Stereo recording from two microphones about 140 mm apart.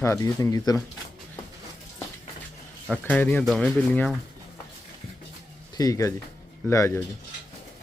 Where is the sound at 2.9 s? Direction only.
10° left (ahead or behind).